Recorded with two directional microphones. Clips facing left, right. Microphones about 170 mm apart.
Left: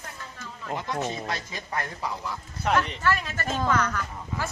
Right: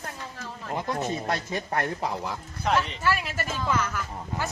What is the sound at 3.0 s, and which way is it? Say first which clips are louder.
Speech: left 1 dB; 10° right (ahead or behind).